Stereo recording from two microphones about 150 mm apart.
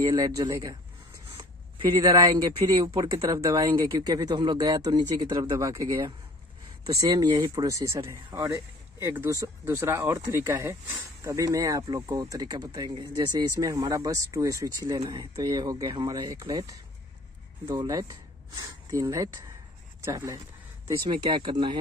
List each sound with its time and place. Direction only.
0.1 s speech: 25° right (ahead or behind)
1.9 s speech: 30° right (ahead or behind)
21.1 s speech: 35° right (ahead or behind)